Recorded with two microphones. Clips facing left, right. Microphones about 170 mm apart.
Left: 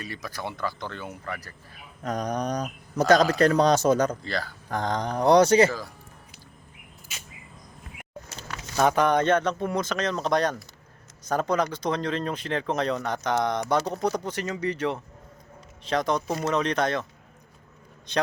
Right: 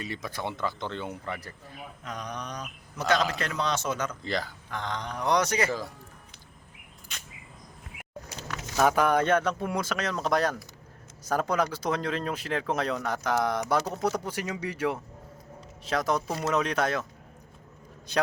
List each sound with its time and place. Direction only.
0.0 s speech: 25° right (ahead or behind)
2.0 s speech: 40° left (ahead or behind)
4.2 s speech: 20° right (ahead or behind)
4.7 s speech: 40° left (ahead or behind)
7.1 s a sound: 5° left (ahead or behind)
8.4 s speech: 5° right (ahead or behind)